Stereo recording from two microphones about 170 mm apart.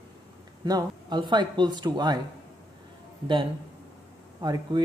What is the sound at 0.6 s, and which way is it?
Speech, 25° right (ahead or behind).